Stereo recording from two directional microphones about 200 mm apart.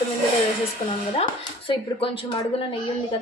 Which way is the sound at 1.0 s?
25° left (ahead or behind).